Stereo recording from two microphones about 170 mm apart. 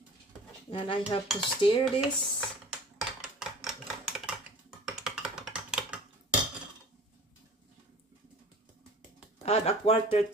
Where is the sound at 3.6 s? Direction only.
5° right (ahead or behind).